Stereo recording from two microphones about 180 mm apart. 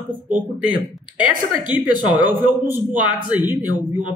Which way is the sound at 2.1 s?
25° left (ahead or behind).